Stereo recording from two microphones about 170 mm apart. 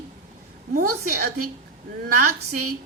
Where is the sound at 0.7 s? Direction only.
55° right (ahead or behind).